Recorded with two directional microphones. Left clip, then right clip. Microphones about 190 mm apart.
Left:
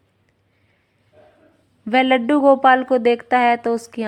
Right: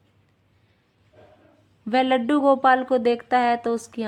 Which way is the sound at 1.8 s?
20° left (ahead or behind).